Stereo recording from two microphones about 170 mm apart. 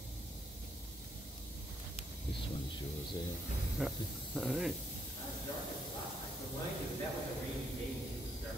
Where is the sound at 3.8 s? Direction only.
5° right (ahead or behind).